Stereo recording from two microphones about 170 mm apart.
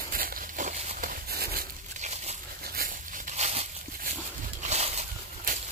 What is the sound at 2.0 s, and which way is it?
Crumpling, 40° right (ahead or behind).